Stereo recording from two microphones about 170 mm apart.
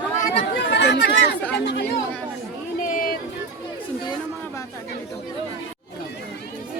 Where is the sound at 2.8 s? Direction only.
55° left (ahead or behind).